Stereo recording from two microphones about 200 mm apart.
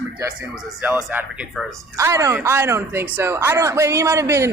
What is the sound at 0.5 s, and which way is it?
A woman's voice, 5° right (ahead or behind).